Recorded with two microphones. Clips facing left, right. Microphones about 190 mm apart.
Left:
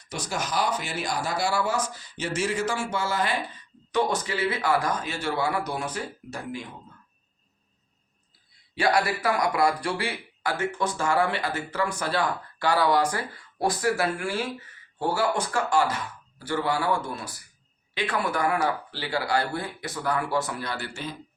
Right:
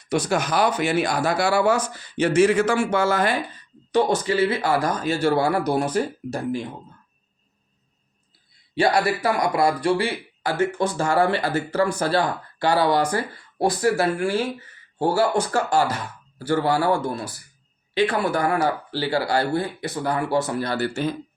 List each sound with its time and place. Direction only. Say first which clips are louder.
0.1 s speech: right 8 dB; 60° right (ahead or behind)
3.9 s speech: right 6 dB; 30° right (ahead or behind)
8.7 s speech: right 4 dB; 25° right (ahead or behind); by 21.2 s 45° right (ahead or behind)